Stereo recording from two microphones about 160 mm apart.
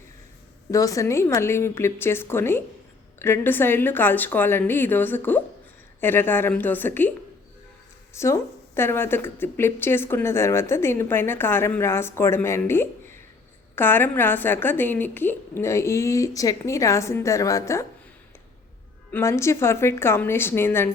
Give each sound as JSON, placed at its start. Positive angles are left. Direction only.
{"t": 0.7, "sound": "speech", "side_deg": 20}
{"t": 8.1, "sound": "speech", "side_deg": 15}
{"t": 19.1, "sound": "speech", "side_deg": 15}